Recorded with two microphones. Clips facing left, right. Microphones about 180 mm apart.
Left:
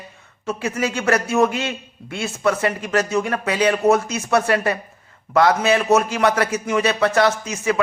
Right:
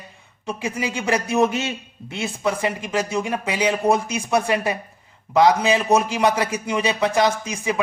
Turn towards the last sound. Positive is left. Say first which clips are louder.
# left 3 dB
turn(degrees=-15)  # may be behind; listen again after turning